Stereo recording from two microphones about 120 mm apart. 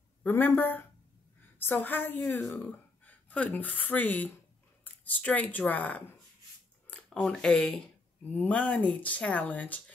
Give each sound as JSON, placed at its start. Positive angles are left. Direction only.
{"t": 0.2, "sound": "a woman's voice", "side_deg": 15}